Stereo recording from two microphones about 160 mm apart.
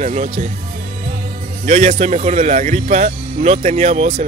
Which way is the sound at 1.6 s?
45° right (ahead or behind).